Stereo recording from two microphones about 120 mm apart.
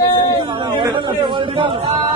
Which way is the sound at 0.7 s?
35° right (ahead or behind).